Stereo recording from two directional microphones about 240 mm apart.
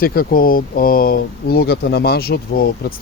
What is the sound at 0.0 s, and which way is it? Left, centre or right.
Speech, left.